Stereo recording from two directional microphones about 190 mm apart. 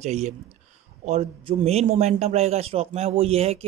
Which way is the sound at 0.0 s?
35° right (ahead or behind).